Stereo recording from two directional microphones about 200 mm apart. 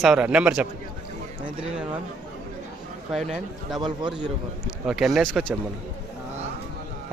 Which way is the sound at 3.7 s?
25° right (ahead or behind).